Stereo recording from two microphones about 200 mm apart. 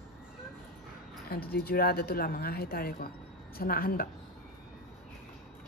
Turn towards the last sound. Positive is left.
turn(degrees=45)  # may be behind; listen again after turning